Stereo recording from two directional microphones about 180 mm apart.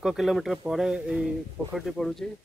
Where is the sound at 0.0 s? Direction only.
Centre (ahead or behind).